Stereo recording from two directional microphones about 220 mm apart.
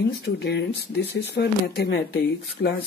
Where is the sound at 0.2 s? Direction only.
50° left (ahead or behind).